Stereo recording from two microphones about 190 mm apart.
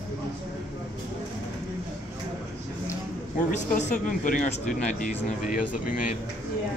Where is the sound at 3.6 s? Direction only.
40° left (ahead or behind).